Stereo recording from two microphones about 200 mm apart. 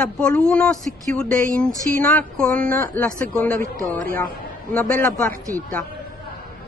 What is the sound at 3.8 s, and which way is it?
Speech, 45° right (ahead or behind).